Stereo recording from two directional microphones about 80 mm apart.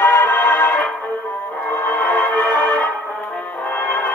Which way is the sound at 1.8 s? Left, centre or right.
Left.